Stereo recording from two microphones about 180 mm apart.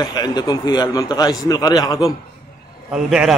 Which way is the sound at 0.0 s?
25° left (ahead or behind).